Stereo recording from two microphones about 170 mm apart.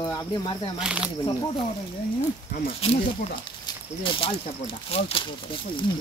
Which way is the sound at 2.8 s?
35° left (ahead or behind).